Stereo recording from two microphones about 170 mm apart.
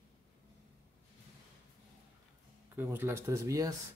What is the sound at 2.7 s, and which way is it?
Speech, 10° right (ahead or behind).